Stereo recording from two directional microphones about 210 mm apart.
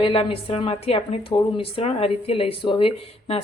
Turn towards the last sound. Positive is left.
turn(degrees=25)  # may be behind; listen again after turning